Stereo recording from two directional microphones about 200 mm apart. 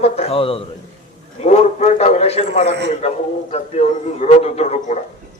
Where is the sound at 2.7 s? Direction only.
60° right (ahead or behind).